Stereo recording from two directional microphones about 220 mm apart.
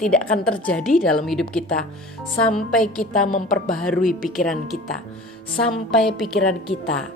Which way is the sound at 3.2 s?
40° left (ahead or behind).